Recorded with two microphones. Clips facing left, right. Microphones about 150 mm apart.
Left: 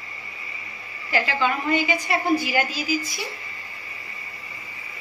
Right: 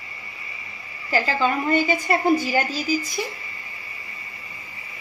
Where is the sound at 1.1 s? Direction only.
40° right (ahead or behind).